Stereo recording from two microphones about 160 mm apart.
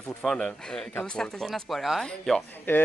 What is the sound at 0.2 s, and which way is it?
Speech, centre (ahead or behind).